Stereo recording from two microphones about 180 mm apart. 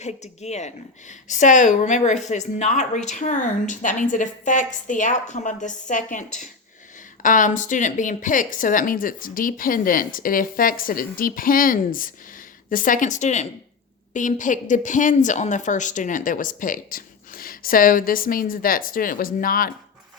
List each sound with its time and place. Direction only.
0.0 s a woman's voice: 40° left (ahead or behind)